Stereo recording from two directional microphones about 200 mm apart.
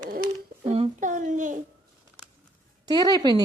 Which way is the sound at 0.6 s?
30° right (ahead or behind).